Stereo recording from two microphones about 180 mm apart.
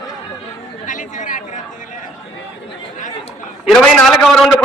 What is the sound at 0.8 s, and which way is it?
Chatter, 45° left (ahead or behind).